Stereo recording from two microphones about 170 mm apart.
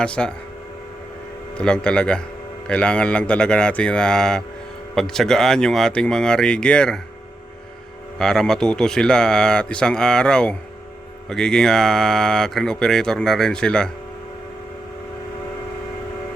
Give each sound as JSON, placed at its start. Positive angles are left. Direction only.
{"t": 0.0, "sound": "speech", "side_deg": 5}
{"t": 1.5, "sound": "speech", "side_deg": 5}
{"t": 8.2, "sound": "speech", "side_deg": 5}